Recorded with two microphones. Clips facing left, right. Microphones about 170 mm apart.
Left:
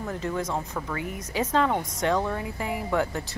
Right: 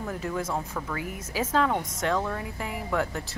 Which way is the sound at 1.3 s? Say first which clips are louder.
Left 1 dB; 5° right (ahead or behind).